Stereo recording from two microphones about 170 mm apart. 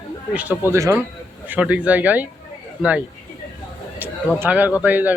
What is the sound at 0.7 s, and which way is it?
Speech, 15° right (ahead or behind).